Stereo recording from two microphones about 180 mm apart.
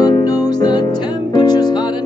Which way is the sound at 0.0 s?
20° left (ahead or behind).